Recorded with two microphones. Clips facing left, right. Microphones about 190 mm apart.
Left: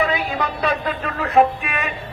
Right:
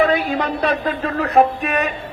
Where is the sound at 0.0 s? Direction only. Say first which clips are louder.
Right 4 dB; 50° right (ahead or behind).